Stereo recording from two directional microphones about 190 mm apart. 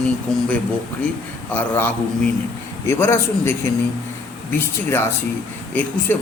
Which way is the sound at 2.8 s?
15° left (ahead or behind).